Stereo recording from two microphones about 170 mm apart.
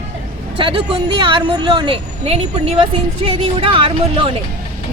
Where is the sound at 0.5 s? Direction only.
30° right (ahead or behind).